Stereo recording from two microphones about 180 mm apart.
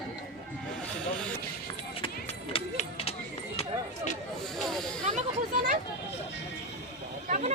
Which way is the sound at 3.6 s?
40° left (ahead or behind).